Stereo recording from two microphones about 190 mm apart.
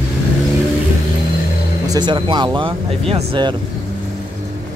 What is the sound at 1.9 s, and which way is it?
A man's voice, 25° right (ahead or behind).